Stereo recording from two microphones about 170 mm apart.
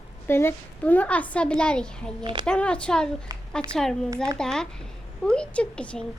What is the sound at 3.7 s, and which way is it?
Speech, centre (ahead or behind).